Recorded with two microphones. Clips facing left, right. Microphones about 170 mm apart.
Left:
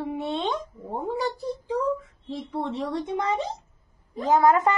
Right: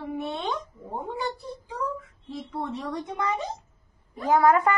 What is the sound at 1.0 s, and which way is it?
Speech, 30° left (ahead or behind).